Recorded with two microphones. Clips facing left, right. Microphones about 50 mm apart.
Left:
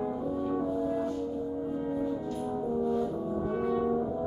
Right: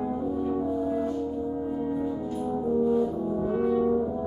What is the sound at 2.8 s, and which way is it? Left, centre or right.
French horn, centre.